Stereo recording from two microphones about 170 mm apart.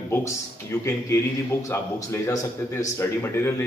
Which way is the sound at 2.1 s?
15° left (ahead or behind).